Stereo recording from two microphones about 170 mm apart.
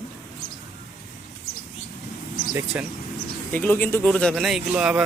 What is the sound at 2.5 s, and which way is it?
Speech, 10° right (ahead or behind).